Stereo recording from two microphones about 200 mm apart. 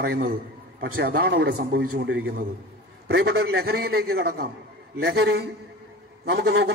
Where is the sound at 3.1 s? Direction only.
55° right (ahead or behind).